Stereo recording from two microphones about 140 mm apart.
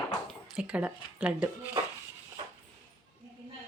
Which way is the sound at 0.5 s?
10° right (ahead or behind).